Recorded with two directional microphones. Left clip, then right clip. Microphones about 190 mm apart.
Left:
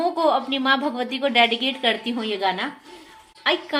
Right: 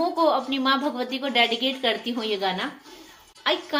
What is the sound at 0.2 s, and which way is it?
A woman's voice, 40° left (ahead or behind).